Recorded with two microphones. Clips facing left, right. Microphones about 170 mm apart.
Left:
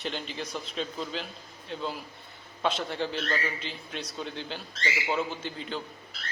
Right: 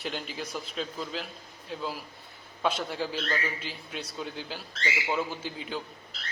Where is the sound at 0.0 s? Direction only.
5° right (ahead or behind).